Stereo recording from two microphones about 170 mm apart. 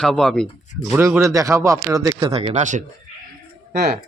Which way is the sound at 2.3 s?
35° right (ahead or behind).